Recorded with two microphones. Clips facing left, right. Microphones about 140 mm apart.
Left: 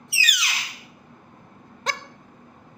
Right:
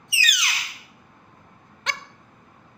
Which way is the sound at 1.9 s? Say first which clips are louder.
Left 3 dB; 35° left (ahead or behind).